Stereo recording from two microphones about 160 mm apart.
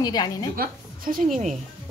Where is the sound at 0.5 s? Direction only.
60° right (ahead or behind).